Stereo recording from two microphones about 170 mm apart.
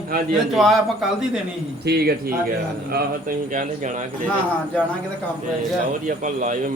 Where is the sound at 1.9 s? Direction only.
70° right (ahead or behind).